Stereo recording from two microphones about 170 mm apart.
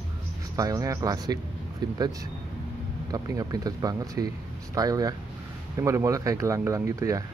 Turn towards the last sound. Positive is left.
turn(degrees=-20)  # may be behind; listen again after turning